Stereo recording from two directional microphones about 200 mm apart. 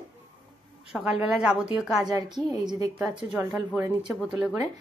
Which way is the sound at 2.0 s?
20° right (ahead or behind).